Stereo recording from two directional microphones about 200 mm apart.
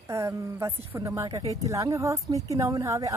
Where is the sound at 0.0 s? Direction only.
15° right (ahead or behind).